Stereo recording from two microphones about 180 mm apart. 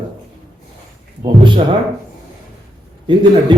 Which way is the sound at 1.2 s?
25° right (ahead or behind).